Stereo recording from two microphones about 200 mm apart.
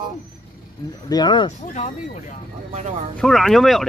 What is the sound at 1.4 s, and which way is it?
Speech, 35° left (ahead or behind).